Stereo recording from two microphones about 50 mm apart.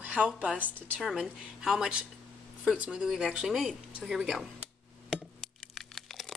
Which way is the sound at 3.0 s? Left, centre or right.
Centre.